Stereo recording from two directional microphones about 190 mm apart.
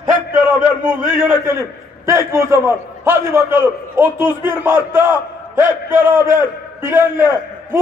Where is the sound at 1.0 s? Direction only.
45° right (ahead or behind).